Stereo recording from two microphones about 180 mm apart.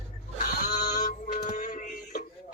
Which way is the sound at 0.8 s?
50° left (ahead or behind).